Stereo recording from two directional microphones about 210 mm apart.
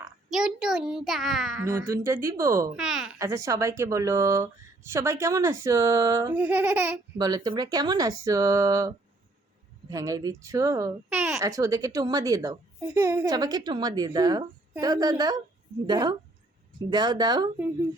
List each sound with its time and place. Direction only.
0.3 s a child's voice: 5° right (ahead or behind)
1.6 s a child's voice: 15° right (ahead or behind)
2.7 s a child's voice: 5° right (ahead or behind)
3.2 s a child's voice: 15° right (ahead or behind)
7.2 s a child's voice: 20° right (ahead or behind)
9.9 s a child's voice: 15° right (ahead or behind)